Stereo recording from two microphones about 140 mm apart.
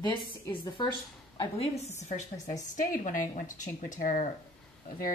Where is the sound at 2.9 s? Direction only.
70° left (ahead or behind).